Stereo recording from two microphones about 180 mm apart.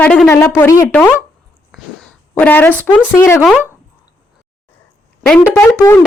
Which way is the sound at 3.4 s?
5° right (ahead or behind).